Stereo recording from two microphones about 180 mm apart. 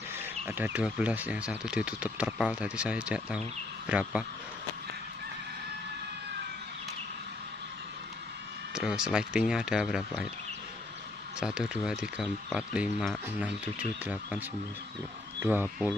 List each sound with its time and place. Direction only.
0.5 s speech: 10° right (ahead or behind)
8.7 s speech: 5° right (ahead or behind)
11.3 s speech: 5° right (ahead or behind)
15.4 s speech: 10° right (ahead or behind)